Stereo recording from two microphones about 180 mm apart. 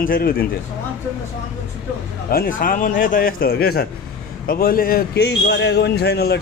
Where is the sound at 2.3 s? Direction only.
50° left (ahead or behind).